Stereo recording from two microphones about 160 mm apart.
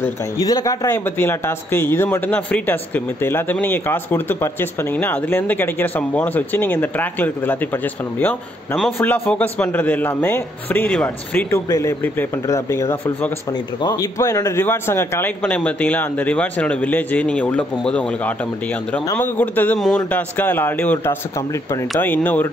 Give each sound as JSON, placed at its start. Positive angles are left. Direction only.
{"t": 0.4, "sound": "a man's voice", "side_deg": 25}